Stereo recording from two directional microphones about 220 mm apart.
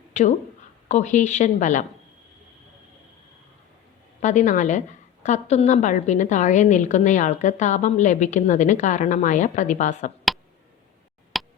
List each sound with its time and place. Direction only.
0.1 s a woman's voice: 30° left (ahead or behind)
4.2 s a woman's voice: 35° left (ahead or behind)
11.3 s a sound: centre (ahead or behind)